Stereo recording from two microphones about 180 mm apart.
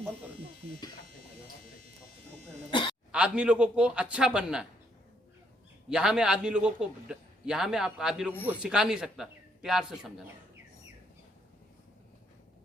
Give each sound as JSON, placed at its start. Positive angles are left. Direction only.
{"t": 2.6, "sound": "a sound", "side_deg": 25}
{"t": 3.1, "sound": "a man's voice", "side_deg": -5}
{"t": 5.9, "sound": "a man's voice", "side_deg": -5}